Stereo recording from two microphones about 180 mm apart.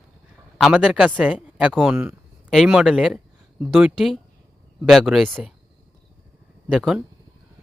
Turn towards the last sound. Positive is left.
turn(degrees=-5)  # may be behind; listen again after turning